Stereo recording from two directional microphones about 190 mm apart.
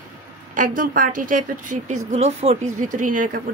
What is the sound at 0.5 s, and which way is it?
A woman's voice, 45° right (ahead or behind).